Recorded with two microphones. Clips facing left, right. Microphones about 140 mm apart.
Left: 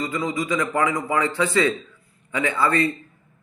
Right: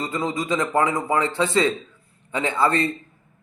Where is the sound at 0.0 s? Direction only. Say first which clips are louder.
Even; 25° right (ahead or behind).